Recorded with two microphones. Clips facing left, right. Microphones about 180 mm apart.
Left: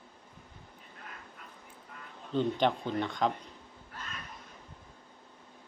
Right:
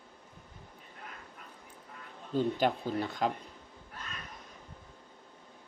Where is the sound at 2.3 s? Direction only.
5° right (ahead or behind).